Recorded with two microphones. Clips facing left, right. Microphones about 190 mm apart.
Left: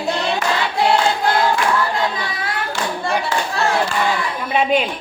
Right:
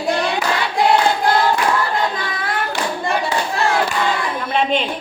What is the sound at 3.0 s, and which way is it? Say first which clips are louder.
Clapping: even; 15° right (ahead or behind).